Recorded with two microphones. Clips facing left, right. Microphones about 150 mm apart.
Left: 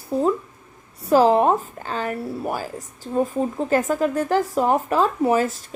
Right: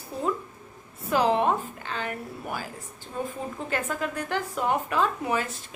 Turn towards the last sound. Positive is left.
turn(degrees=40)  # may be behind; listen again after turning